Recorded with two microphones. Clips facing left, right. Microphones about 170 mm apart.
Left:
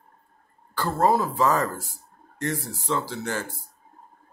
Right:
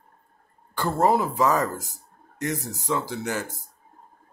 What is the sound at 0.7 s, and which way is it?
Speech, 20° right (ahead or behind).